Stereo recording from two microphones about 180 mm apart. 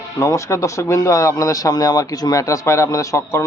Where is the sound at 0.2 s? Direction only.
15° left (ahead or behind).